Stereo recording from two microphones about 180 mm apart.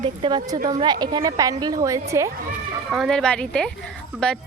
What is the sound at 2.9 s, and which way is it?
A woman's voice, centre (ahead or behind).